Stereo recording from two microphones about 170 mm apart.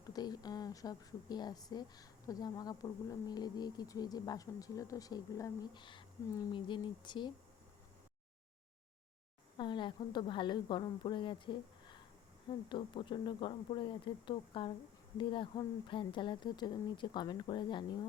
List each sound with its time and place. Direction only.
0.1 s a woman's voice: 25° left (ahead or behind)
9.6 s a woman's voice: 25° left (ahead or behind)